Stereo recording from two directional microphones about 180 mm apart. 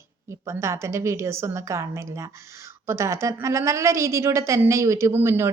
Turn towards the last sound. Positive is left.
turn(degrees=-15)  # may be behind; listen again after turning